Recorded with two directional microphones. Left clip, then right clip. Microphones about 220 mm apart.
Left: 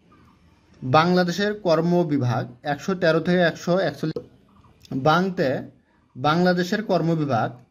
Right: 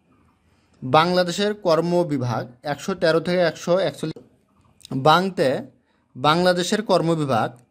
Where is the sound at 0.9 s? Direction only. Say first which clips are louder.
Right 1 dB; 35° right (ahead or behind).